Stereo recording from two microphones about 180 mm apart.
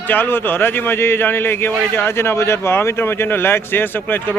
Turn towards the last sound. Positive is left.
turn(degrees=10)  # may be behind; listen again after turning